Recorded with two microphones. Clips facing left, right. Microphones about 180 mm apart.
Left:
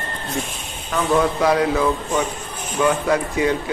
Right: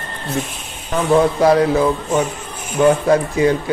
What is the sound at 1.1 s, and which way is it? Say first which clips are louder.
Speech: right 5 dB; 35° right (ahead or behind).